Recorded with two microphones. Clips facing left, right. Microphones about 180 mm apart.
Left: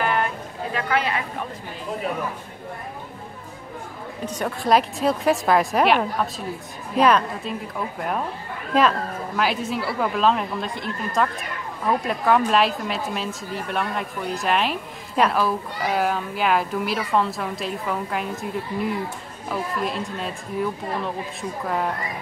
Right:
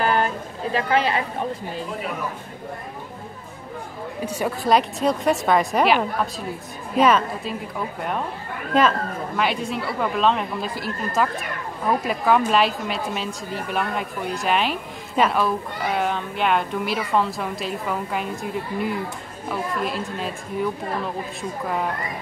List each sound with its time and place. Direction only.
0.0 s a sound: 30° right (ahead or behind)
0.7 s speech: 30° right (ahead or behind)
4.3 s a woman's voice: 5° right (ahead or behind)
8.7 s a woman's voice: centre (ahead or behind)